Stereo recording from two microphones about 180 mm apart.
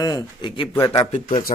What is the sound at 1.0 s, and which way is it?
Speech, 40° left (ahead or behind).